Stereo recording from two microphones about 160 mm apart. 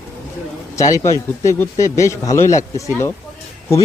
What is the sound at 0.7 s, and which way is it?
A man's voice, 20° left (ahead or behind).